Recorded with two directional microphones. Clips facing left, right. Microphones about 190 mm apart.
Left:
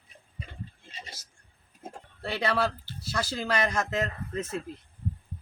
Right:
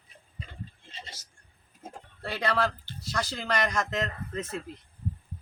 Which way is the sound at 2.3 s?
5° left (ahead or behind).